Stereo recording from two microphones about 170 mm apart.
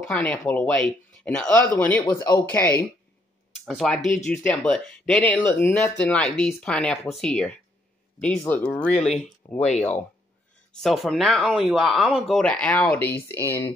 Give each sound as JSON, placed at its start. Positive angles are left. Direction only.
{"t": 0.0, "sound": "speech", "side_deg": 5}
{"t": 2.1, "sound": "speech", "side_deg": 20}
{"t": 2.5, "sound": "speech", "side_deg": 10}
{"t": 9.6, "sound": "speech", "side_deg": 40}
{"t": 10.7, "sound": "speech", "side_deg": 0}